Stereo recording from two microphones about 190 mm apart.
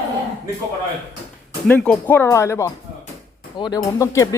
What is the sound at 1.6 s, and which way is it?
Speech, 5° left (ahead or behind).